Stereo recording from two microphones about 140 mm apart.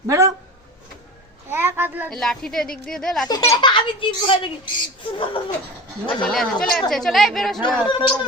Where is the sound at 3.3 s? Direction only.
25° left (ahead or behind).